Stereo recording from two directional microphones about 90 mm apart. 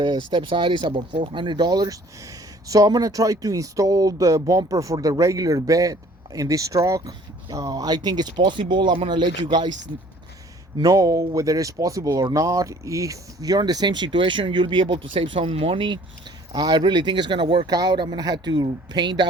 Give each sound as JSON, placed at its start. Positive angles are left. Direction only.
{"t": 0.0, "sound": "speech", "side_deg": -65}
{"t": 10.8, "sound": "speech", "side_deg": -40}
{"t": 16.6, "sound": "speech", "side_deg": -50}
{"t": 17.7, "sound": "speech", "side_deg": -45}